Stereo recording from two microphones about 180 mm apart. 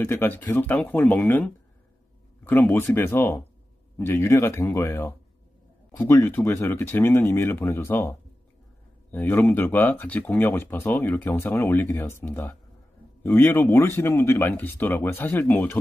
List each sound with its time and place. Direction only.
0.0 s speech: 10° left (ahead or behind)